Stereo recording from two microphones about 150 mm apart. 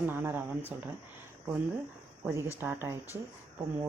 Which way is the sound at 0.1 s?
15° right (ahead or behind).